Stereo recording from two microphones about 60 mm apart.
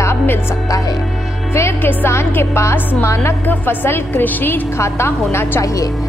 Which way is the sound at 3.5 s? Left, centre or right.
Left.